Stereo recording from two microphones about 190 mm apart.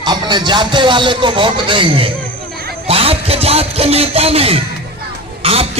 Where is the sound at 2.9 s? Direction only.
30° right (ahead or behind).